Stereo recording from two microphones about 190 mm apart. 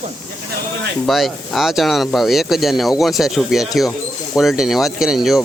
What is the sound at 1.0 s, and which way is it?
Speech, centre (ahead or behind).